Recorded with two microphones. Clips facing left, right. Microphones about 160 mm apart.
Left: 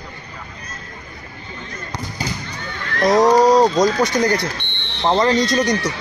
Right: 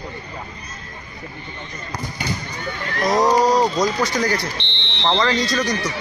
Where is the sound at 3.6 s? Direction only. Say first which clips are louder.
Left 4 dB; 20° left (ahead or behind).